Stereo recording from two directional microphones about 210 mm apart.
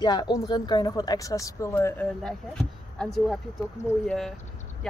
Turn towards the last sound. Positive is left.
turn(degrees=15)  # may be behind; listen again after turning